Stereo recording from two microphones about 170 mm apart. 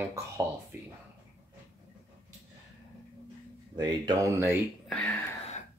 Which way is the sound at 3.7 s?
20° right (ahead or behind).